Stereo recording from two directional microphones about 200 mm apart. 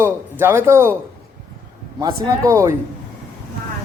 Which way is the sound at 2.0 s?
15° right (ahead or behind).